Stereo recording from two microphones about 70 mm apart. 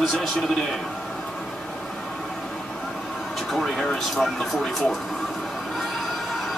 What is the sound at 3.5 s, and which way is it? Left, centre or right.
Speech, centre.